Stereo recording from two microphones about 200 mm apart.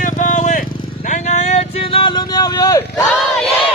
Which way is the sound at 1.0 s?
35° left (ahead or behind).